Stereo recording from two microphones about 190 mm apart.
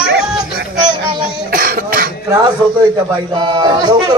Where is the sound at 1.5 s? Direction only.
45° right (ahead or behind).